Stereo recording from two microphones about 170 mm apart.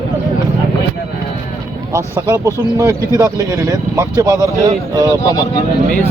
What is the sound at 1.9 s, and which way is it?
Speech, 20° right (ahead or behind).